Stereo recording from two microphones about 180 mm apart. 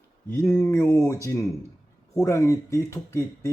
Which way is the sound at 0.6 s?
10° left (ahead or behind).